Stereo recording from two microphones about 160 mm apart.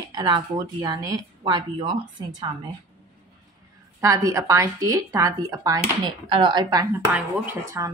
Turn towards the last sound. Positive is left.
turn(degrees=-20)  # may be behind; listen again after turning